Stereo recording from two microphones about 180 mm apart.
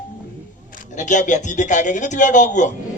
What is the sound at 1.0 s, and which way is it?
A man's voice, 45° left (ahead or behind).